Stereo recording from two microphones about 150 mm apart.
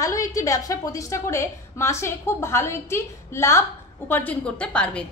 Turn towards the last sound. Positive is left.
turn(degrees=5)  # may be behind; listen again after turning